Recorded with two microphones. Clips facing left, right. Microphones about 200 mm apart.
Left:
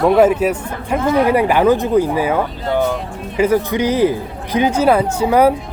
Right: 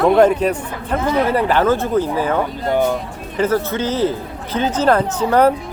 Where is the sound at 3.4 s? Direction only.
15° left (ahead or behind).